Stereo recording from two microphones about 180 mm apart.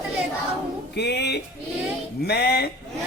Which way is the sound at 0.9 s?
70° left (ahead or behind).